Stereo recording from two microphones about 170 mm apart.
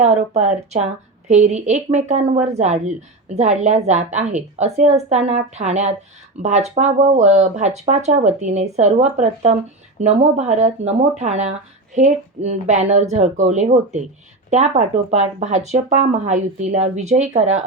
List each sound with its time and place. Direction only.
0.0 s a woman's voice: 40° right (ahead or behind)